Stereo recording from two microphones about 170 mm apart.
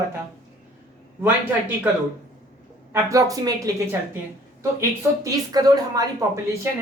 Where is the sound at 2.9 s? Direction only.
20° right (ahead or behind).